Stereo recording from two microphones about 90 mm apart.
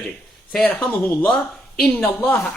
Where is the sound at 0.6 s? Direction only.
15° left (ahead or behind).